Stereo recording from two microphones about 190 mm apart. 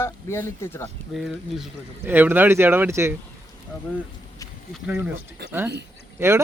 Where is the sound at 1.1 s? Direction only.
Centre (ahead or behind).